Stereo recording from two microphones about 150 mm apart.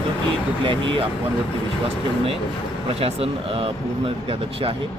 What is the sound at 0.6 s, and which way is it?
Speech, 35° right (ahead or behind).